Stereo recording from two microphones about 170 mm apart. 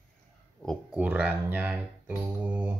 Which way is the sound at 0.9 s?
10° right (ahead or behind).